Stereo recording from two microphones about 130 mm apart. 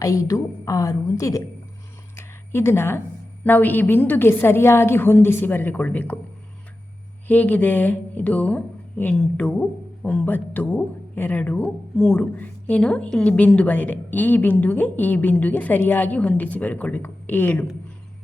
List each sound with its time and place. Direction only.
0.0 s a woman's voice: 25° left (ahead or behind)
2.1 s a sound: 20° left (ahead or behind)
3.4 s speech: 15° left (ahead or behind)
7.3 s speech: 10° left (ahead or behind)